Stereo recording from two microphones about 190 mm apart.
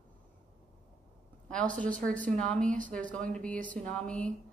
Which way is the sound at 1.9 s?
45° right (ahead or behind).